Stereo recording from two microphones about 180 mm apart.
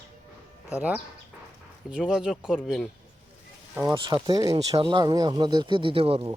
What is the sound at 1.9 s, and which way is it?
Speech, 5° right (ahead or behind).